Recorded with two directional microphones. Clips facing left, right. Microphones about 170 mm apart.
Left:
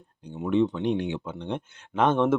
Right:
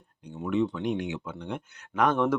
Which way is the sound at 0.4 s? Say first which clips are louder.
Left 3 dB; 25° left (ahead or behind).